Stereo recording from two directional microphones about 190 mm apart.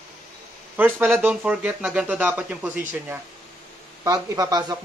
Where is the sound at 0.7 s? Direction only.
10° right (ahead or behind).